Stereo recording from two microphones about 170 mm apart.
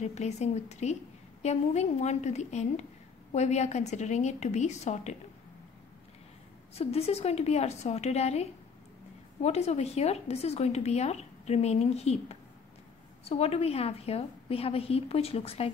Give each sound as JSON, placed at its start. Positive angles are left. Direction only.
{"t": 0.0, "sound": "a woman's voice", "side_deg": 40}
{"t": 6.7, "sound": "a woman's voice", "side_deg": 35}